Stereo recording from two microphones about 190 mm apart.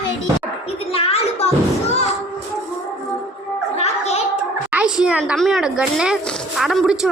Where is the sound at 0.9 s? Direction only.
30° left (ahead or behind).